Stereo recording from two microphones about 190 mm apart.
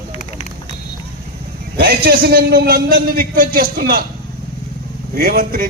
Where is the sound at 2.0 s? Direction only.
50° right (ahead or behind).